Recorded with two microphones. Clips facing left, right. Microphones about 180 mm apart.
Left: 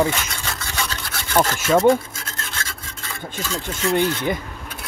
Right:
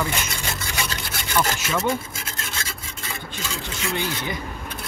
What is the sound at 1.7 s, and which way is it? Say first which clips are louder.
Speech: left 9 dB; 45° left (ahead or behind).